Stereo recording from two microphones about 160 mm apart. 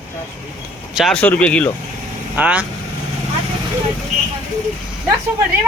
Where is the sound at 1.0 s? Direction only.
5° left (ahead or behind).